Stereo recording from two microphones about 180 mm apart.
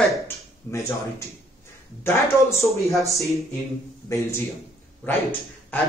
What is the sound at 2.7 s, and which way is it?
Speech, centre (ahead or behind).